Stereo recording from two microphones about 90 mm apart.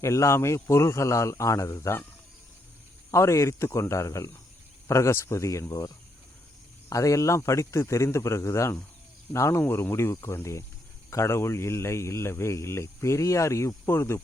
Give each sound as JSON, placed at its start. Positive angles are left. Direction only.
{"t": 0.0, "sound": "speech", "side_deg": 35}
{"t": 3.1, "sound": "speech", "side_deg": 35}
{"t": 6.9, "sound": "speech", "side_deg": 35}